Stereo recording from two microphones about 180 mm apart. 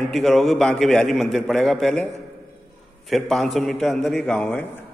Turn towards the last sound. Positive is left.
turn(degrees=5)  # may be behind; listen again after turning